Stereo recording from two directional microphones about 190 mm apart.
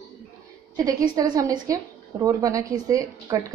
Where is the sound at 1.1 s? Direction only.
20° right (ahead or behind).